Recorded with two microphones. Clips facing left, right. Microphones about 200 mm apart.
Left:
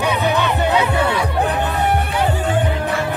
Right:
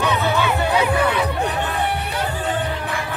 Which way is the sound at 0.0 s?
15° left (ahead or behind).